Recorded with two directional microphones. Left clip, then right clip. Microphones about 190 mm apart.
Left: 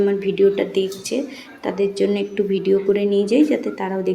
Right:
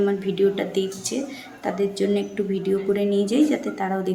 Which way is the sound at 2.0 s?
10° left (ahead or behind).